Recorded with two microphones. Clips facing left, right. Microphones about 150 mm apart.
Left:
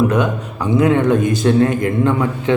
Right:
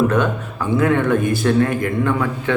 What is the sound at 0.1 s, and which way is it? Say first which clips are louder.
A man's voice: left 1 dB; 15° left (ahead or behind).